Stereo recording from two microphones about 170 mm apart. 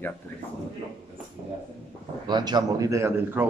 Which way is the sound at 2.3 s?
25° right (ahead or behind).